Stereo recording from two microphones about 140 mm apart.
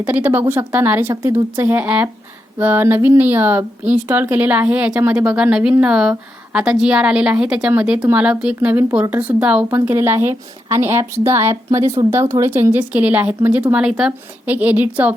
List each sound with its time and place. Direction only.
0.1 s speech: 10° right (ahead or behind)